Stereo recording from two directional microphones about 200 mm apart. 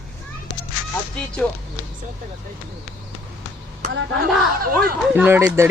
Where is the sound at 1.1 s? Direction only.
5° left (ahead or behind).